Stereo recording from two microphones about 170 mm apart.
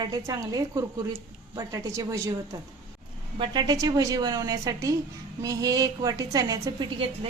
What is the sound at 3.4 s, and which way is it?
A woman's voice, 25° right (ahead or behind).